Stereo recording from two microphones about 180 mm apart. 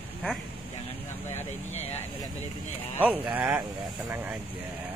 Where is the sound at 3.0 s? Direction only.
10° right (ahead or behind).